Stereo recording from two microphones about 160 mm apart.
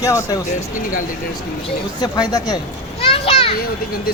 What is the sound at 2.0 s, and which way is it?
Speech, 25° left (ahead or behind).